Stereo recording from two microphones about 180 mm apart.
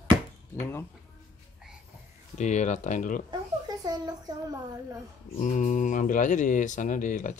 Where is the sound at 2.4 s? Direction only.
40° left (ahead or behind).